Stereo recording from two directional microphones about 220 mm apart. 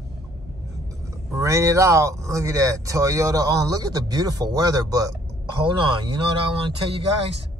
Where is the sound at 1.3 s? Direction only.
15° right (ahead or behind).